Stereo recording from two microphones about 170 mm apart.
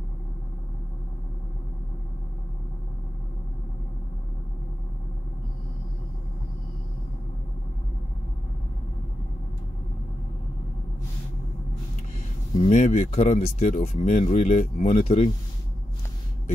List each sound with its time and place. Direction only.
12.6 s speech: 45° left (ahead or behind)